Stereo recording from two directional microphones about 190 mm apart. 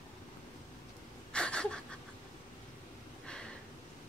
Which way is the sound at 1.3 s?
5° left (ahead or behind).